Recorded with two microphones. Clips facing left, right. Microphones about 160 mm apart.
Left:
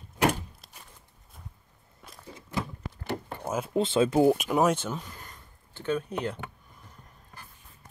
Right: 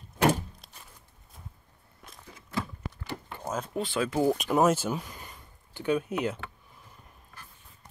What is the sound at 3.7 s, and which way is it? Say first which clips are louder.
Speech: left 7 dB; 25° left (ahead or behind).